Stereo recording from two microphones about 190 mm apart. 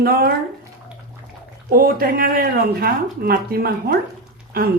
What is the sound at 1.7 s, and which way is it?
Speech, 50° right (ahead or behind).